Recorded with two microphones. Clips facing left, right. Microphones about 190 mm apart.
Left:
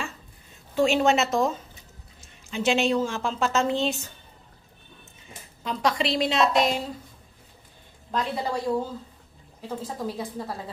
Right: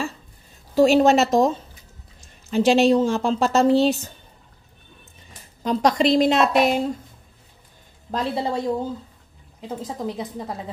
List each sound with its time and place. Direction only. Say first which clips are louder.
0.7 s a woman's voice: right 6 dB; 40° right (ahead or behind)
2.5 s a woman's voice: right 7 dB; 35° right (ahead or behind)
5.6 s a woman's voice: right 7 dB; 40° right (ahead or behind); by 6.8 s 55° right (ahead or behind)
8.1 s a woman's voice: right 4 dB; 30° right (ahead or behind)
9.6 s a woman's voice: right 2 dB; 20° right (ahead or behind)